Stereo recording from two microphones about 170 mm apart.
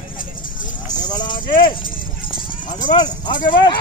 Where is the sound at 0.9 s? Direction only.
25° left (ahead or behind).